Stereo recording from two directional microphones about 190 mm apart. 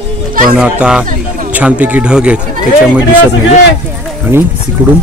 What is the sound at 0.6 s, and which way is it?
A child's voice, 5° right (ahead or behind).